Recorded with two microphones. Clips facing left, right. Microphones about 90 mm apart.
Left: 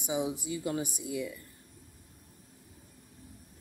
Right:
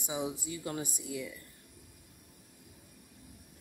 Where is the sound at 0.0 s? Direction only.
15° left (ahead or behind).